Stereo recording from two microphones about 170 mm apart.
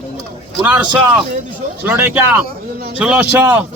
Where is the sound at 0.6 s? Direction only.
10° right (ahead or behind).